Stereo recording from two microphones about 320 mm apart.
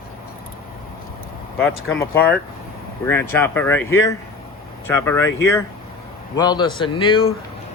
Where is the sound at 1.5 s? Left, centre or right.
Centre.